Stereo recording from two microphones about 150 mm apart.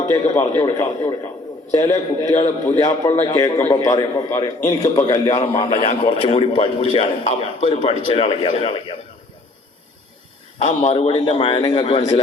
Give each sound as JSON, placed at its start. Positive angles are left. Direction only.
{"t": 0.1, "sound": "a man's voice", "side_deg": 20}
{"t": 5.5, "sound": "a man's voice", "side_deg": 45}
{"t": 10.9, "sound": "a man's voice", "side_deg": 40}
{"t": 11.4, "sound": "a man's voice", "side_deg": 30}